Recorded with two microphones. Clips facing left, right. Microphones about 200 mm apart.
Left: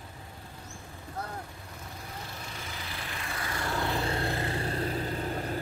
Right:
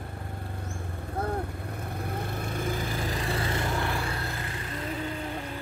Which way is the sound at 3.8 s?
25° left (ahead or behind).